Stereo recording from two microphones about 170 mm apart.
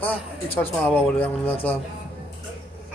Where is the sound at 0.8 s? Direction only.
10° left (ahead or behind).